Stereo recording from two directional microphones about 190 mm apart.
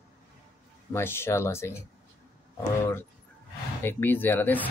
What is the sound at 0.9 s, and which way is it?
Speech, 10° left (ahead or behind).